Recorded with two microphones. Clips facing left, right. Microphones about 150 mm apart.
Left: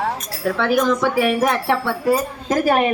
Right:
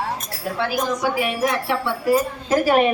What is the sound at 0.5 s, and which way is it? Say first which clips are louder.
Speech: left 5 dB; 75° left (ahead or behind).